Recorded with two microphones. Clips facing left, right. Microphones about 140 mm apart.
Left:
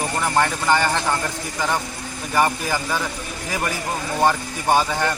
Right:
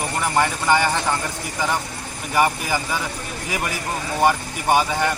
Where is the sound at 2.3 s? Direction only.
10° right (ahead or behind).